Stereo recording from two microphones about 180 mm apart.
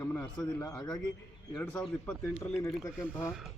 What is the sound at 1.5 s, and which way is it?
A man's voice, 10° left (ahead or behind).